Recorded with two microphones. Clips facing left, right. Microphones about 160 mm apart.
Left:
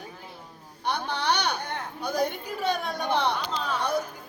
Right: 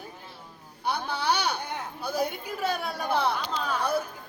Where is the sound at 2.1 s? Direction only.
5° right (ahead or behind).